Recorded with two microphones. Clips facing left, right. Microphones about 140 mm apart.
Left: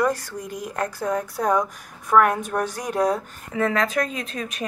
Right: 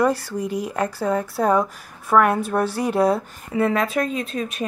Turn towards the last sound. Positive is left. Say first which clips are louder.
# right 5 dB
turn(degrees=-5)  # may be behind; listen again after turning